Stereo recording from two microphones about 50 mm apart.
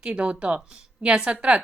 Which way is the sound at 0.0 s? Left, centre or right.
Right.